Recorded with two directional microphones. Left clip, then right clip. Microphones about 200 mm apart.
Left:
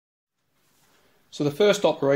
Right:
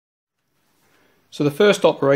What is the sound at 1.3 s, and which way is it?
Speech, 25° right (ahead or behind).